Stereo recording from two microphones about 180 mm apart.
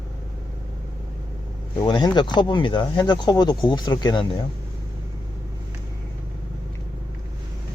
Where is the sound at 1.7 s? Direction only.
25° left (ahead or behind).